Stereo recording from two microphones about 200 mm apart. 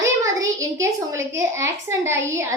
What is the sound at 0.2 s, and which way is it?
A child's voice, 15° right (ahead or behind).